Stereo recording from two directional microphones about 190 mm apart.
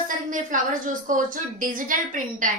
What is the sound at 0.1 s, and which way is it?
A woman's voice, 45° right (ahead or behind).